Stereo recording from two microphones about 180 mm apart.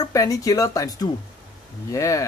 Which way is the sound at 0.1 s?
20° left (ahead or behind).